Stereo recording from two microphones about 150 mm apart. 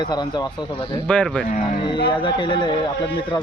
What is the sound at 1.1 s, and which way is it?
Speech, 10° left (ahead or behind).